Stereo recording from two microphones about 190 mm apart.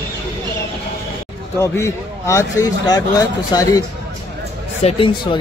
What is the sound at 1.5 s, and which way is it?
A man's voice, 15° left (ahead or behind).